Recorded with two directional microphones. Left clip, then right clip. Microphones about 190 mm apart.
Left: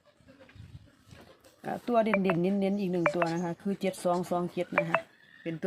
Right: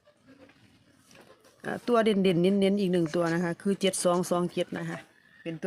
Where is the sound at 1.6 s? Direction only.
20° right (ahead or behind).